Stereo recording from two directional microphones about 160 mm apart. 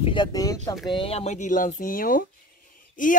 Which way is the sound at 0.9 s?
35° left (ahead or behind).